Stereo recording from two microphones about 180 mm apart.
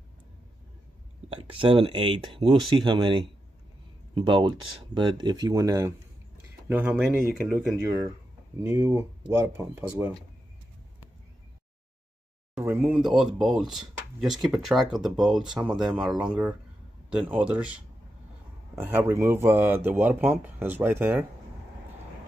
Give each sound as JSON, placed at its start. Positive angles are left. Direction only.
{"t": 1.3, "sound": "speech", "side_deg": -30}
{"t": 12.5, "sound": "speech", "side_deg": -10}
{"t": 18.8, "sound": "speech", "side_deg": -10}